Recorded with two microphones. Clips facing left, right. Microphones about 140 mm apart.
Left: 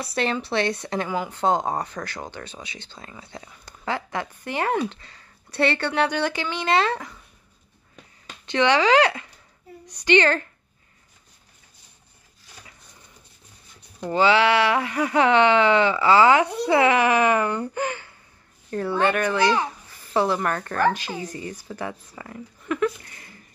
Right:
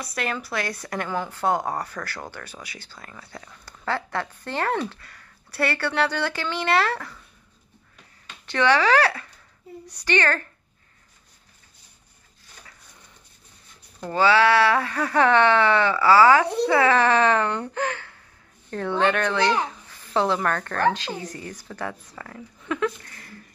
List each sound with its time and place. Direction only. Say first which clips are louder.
0.0 s speech: left 4 dB; 30° left (ahead or behind)
1.0 s speech: left 1 dB; 10° left (ahead or behind)
8.5 s speech: left 1 dB; 20° left (ahead or behind)
13.9 s speech: even; 15° left (ahead or behind)
19.6 s a sound: left 1 dB; 10° left (ahead or behind)
20.4 s speech: even; 10° left (ahead or behind)
23.0 s a sound: right 3 dB; 20° left (ahead or behind)